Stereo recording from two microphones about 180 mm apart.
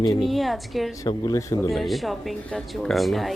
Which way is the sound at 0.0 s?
20° left (ahead or behind).